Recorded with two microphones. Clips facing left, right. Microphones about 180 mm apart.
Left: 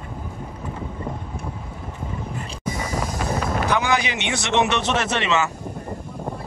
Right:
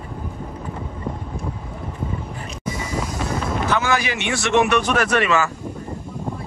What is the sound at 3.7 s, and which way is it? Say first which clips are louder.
Speech: right 1 dB; 15° left (ahead or behind).